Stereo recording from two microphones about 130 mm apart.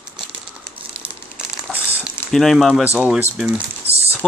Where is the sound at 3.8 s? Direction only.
50° right (ahead or behind).